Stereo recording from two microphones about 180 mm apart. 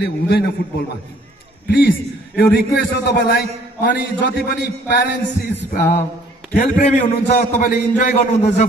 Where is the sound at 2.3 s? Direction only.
60° left (ahead or behind).